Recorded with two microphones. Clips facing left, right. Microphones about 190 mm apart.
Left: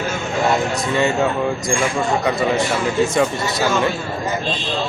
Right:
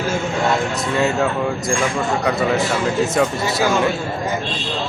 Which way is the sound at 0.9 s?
Centre (ahead or behind).